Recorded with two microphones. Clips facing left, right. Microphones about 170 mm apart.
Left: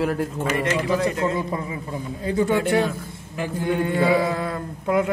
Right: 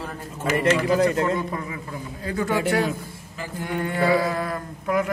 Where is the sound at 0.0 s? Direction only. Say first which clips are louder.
Left 11 dB; 75° left (ahead or behind).